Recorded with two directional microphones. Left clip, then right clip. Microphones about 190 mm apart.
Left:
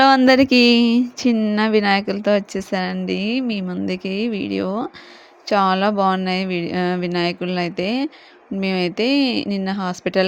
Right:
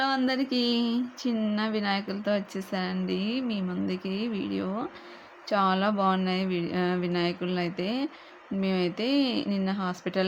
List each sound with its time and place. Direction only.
0.3 s speech: 50° left (ahead or behind)